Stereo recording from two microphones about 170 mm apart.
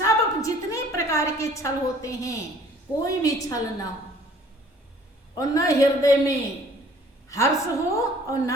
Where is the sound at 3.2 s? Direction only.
20° left (ahead or behind).